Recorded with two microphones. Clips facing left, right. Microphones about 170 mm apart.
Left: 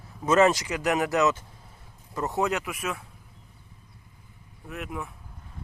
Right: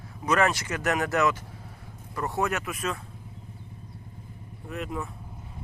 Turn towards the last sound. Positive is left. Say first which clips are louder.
# right 2 dB
turn(degrees=0)  # may be behind; listen again after turning